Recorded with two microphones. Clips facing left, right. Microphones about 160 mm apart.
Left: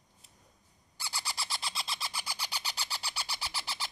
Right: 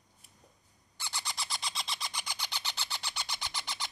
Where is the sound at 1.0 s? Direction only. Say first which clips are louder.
Even; 5° left (ahead or behind).